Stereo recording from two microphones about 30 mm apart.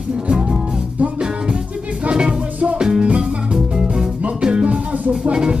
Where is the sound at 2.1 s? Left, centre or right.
Right.